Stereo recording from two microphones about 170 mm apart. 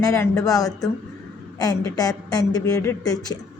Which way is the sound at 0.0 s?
20° left (ahead or behind).